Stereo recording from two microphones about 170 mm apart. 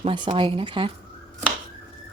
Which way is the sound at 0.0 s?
30° right (ahead or behind).